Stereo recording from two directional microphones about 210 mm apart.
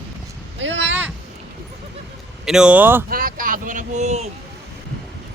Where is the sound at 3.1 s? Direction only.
45° right (ahead or behind).